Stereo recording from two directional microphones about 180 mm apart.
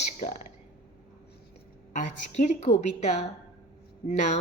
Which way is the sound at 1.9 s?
45° left (ahead or behind).